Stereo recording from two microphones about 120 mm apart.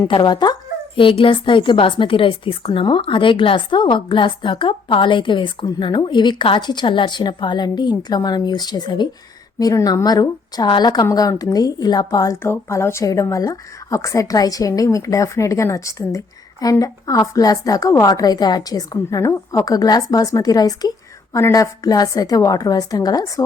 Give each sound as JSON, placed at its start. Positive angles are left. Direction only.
{"t": 0.1, "sound": "a woman's voice", "side_deg": 40}
{"t": 18.9, "sound": "a woman's voice", "side_deg": 25}